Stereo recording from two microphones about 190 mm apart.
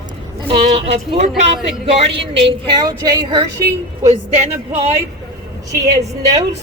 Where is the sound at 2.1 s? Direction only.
70° right (ahead or behind).